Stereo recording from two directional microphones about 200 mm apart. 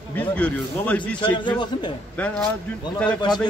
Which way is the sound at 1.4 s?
25° left (ahead or behind).